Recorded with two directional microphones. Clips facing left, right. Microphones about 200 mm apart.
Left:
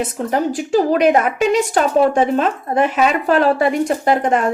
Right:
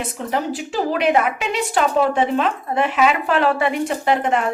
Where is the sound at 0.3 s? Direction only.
45° left (ahead or behind).